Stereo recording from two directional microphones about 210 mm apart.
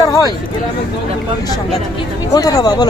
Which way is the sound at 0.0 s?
15° left (ahead or behind).